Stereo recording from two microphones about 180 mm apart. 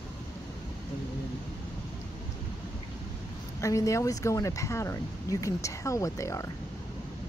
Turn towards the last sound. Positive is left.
turn(degrees=15)  # may be behind; listen again after turning